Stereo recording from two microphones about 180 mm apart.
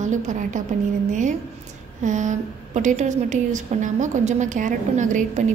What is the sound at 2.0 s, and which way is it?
A woman's voice, 45° right (ahead or behind).